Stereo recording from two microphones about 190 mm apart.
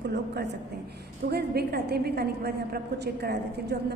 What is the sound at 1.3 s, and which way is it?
A man's voice, 55° right (ahead or behind).